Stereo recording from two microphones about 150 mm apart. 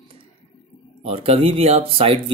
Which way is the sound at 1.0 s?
40° right (ahead or behind).